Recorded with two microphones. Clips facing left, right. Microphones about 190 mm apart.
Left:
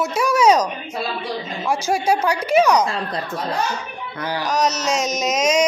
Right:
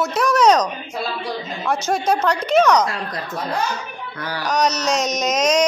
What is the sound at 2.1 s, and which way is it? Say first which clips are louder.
Speech: even; 10° left (ahead or behind).